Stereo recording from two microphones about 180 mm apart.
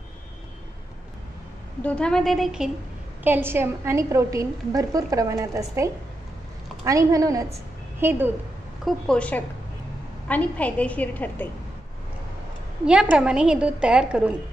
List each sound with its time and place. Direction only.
1.8 s a woman's voice: 5° left (ahead or behind)
3.3 s a woman's voice: 10° right (ahead or behind)
8.8 s a woman's voice: 5° left (ahead or behind)
12.8 s a woman's voice: 5° right (ahead or behind)